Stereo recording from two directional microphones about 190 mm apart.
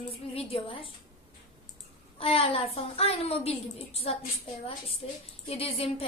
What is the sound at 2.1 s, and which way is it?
A woman's voice, 30° left (ahead or behind).